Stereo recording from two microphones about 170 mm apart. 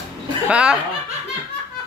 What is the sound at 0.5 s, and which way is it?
Speech, 5° right (ahead or behind).